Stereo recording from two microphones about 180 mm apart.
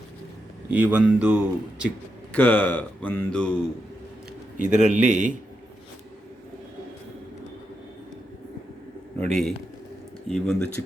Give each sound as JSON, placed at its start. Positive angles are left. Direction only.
{"t": 0.7, "sound": "speech", "side_deg": -10}
{"t": 2.3, "sound": "speech", "side_deg": 10}
{"t": 4.9, "sound": "a man's voice", "side_deg": -40}
{"t": 9.1, "sound": "a man's voice", "side_deg": 5}